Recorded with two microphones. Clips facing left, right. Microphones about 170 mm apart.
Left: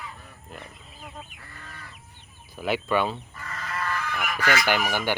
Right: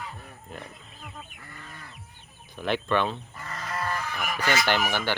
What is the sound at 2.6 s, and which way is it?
Speech, 10° left (ahead or behind).